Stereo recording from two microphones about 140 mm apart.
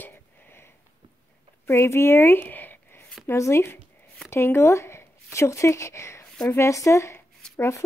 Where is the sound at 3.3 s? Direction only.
20° left (ahead or behind).